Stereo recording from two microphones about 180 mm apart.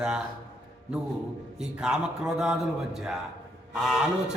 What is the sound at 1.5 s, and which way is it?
A man's voice, 5° right (ahead or behind).